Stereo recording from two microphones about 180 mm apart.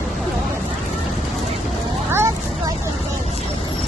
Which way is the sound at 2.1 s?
15° right (ahead or behind).